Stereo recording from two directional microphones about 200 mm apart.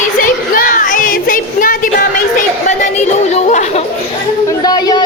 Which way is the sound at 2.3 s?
35° left (ahead or behind).